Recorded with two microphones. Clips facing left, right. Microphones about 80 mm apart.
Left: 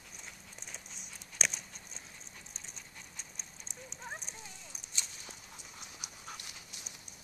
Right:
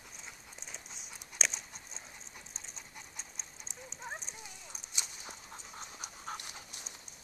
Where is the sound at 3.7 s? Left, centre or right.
Centre.